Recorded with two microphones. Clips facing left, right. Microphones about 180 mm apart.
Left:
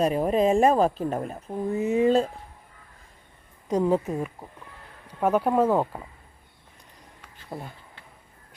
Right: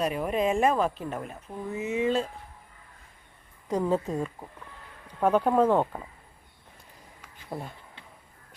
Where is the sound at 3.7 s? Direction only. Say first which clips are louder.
Left 3 dB; 15° left (ahead or behind).